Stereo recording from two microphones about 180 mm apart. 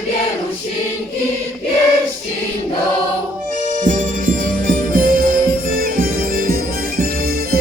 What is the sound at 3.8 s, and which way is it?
Music, 45° right (ahead or behind).